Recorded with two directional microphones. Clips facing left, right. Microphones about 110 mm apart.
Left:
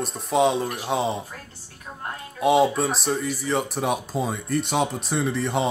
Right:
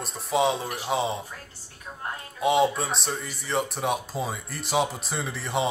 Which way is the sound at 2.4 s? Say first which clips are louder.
Left 3 dB; centre (ahead or behind).